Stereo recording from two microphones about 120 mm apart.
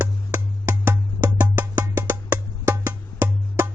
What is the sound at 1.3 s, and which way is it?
Music, 15° right (ahead or behind).